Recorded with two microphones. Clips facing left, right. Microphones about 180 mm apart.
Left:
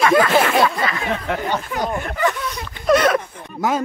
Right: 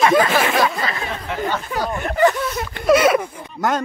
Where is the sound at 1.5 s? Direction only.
20° left (ahead or behind).